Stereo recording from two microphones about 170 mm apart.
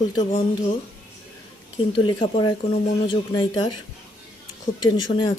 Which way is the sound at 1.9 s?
30° left (ahead or behind).